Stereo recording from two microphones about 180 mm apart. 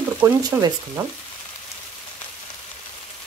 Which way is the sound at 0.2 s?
15° right (ahead or behind).